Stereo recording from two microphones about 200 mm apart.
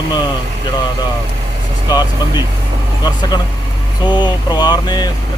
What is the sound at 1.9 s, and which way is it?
Speech, 20° left (ahead or behind).